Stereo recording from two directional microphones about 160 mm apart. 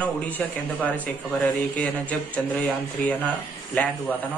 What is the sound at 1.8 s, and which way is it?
Speech, 10° left (ahead or behind).